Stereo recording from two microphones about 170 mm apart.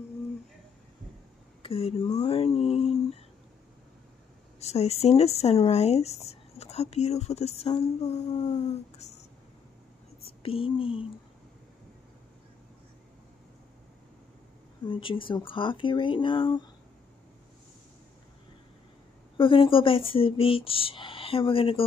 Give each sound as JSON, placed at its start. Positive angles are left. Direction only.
{"t": 1.6, "sound": "speech", "side_deg": 35}
{"t": 2.1, "sound": "a sound", "side_deg": 35}
{"t": 4.6, "sound": "speech", "side_deg": 40}
{"t": 10.2, "sound": "speech", "side_deg": 35}
{"t": 14.9, "sound": "speech", "side_deg": 30}
{"t": 19.3, "sound": "speech", "side_deg": 30}